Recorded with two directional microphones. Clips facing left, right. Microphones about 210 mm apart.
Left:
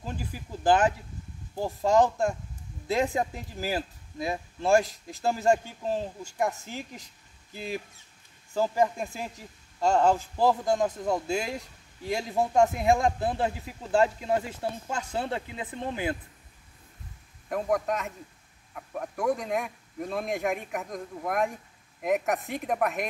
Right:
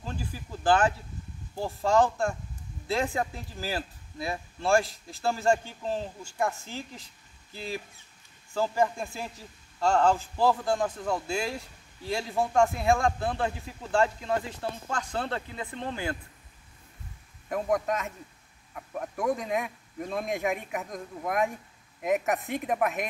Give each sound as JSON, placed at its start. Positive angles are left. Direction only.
{"t": 0.0, "sound": "speech", "side_deg": 15}
{"t": 17.5, "sound": "speech", "side_deg": 0}